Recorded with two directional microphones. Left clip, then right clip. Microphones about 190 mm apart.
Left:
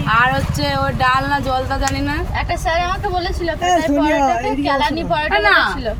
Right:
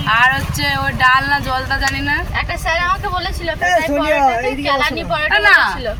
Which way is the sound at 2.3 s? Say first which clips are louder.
Even; centre (ahead or behind).